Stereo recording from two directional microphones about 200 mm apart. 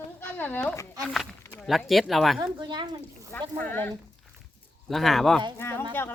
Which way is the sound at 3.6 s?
10° left (ahead or behind).